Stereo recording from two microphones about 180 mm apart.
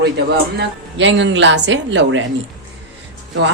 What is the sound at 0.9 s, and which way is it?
Speech, 90° right.